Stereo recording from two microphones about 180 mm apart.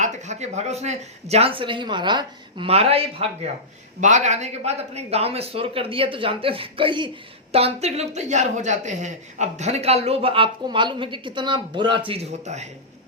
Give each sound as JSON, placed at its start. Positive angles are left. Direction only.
{"t": 0.0, "sound": "a man's voice", "side_deg": -40}